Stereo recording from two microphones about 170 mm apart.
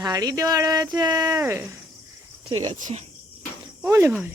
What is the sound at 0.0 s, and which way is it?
Speech, 20° right (ahead or behind).